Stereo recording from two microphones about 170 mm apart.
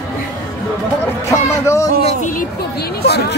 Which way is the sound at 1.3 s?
20° left (ahead or behind).